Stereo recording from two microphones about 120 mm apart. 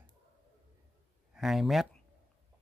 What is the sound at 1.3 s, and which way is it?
Speech, centre (ahead or behind).